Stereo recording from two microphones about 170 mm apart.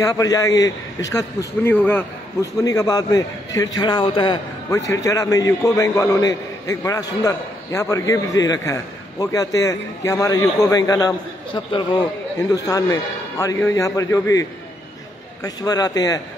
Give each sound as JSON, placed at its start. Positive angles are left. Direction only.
{"t": 0.0, "sound": "a man's voice", "side_deg": 20}
{"t": 15.4, "sound": "a man's voice", "side_deg": 20}